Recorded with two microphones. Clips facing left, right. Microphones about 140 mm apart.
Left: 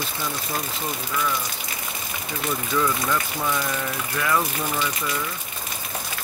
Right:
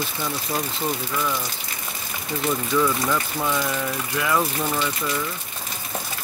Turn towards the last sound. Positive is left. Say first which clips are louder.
# right 1 dB
turn(degrees=-10)  # may be behind; listen again after turning